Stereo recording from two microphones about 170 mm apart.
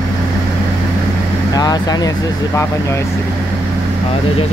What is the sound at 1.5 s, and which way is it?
Speech, 25° left (ahead or behind).